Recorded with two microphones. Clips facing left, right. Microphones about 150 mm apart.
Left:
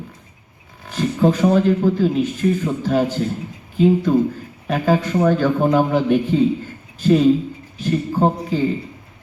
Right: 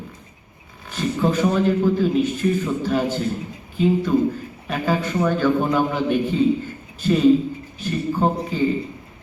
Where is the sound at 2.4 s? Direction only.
60° left (ahead or behind).